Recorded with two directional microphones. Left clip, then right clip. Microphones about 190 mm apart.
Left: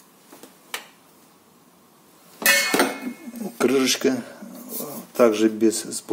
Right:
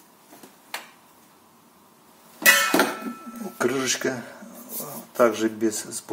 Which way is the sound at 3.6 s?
20° left (ahead or behind).